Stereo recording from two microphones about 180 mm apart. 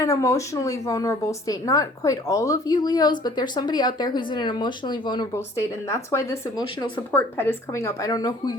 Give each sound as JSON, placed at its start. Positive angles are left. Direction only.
{"t": 0.0, "sound": "a woman's voice", "side_deg": 15}